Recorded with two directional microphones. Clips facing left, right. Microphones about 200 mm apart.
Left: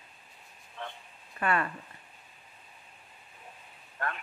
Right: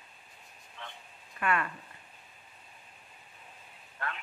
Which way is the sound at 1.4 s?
35° left (ahead or behind).